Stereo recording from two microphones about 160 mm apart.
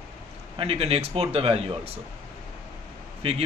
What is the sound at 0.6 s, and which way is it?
A man's voice, 40° right (ahead or behind).